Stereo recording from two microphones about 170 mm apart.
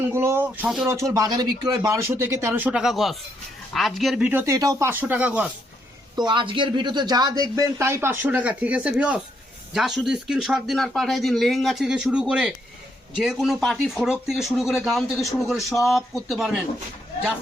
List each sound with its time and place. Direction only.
0.1 s speech: 15° right (ahead or behind)
0.9 s speech: 20° right (ahead or behind); by 4.3 s centre (ahead or behind)
4.3 s speech: 15° right (ahead or behind)
6.1 s speech: 25° right (ahead or behind); by 16.6 s centre (ahead or behind)